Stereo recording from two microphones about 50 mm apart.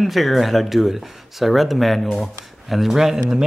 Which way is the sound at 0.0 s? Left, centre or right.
Centre.